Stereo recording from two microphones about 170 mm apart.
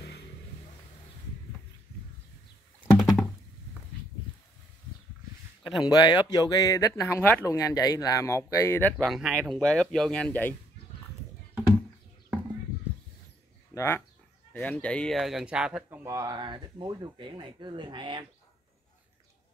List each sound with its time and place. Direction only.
2.8 s a sound: centre (ahead or behind)
5.6 s a sound: centre (ahead or behind)
5.9 s speech: 25° left (ahead or behind)
8.9 s speech: centre (ahead or behind)
13.7 s speech: 15° left (ahead or behind); by 16.0 s 5° right (ahead or behind)
16.0 s speech: 20° right (ahead or behind)